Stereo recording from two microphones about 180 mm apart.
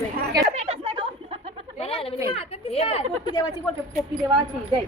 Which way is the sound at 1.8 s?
30° left (ahead or behind).